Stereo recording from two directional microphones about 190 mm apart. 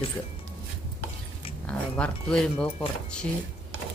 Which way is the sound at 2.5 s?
30° left (ahead or behind).